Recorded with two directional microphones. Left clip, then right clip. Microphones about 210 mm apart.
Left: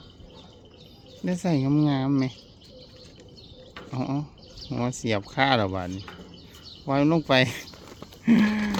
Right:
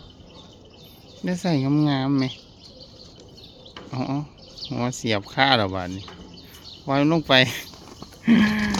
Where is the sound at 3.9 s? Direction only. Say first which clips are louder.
Right 2 dB; 5° left (ahead or behind).